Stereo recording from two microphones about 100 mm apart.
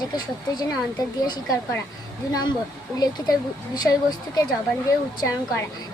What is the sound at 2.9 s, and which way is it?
A woman's voice, 40° left (ahead or behind).